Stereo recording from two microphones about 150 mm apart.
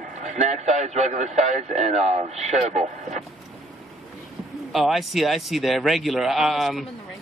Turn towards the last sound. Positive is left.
turn(degrees=0)  # may be behind; listen again after turning